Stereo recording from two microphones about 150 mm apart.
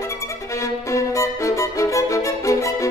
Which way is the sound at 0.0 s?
20° left (ahead or behind).